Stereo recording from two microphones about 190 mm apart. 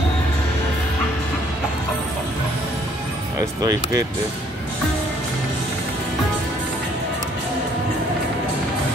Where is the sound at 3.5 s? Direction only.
20° right (ahead or behind).